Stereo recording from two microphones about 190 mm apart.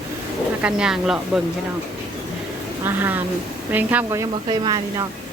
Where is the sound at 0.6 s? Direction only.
5° right (ahead or behind).